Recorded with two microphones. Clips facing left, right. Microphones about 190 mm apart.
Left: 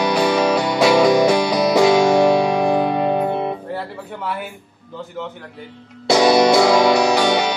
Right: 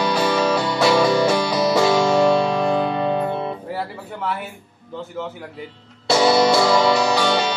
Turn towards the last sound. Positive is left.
turn(degrees=15)  # may be behind; listen again after turning